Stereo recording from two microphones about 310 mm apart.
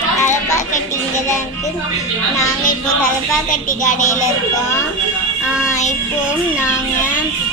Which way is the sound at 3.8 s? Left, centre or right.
Left.